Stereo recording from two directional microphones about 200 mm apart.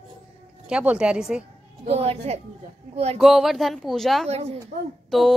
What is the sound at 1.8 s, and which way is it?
Speech, 30° right (ahead or behind).